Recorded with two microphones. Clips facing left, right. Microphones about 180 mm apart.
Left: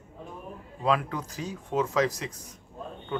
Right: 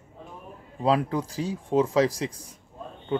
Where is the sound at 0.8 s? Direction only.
30° right (ahead or behind).